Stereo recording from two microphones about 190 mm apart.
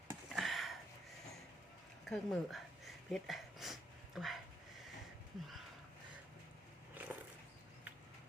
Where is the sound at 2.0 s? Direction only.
Centre (ahead or behind).